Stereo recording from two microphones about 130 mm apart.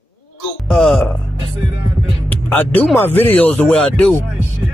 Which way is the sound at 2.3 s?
15° left (ahead or behind).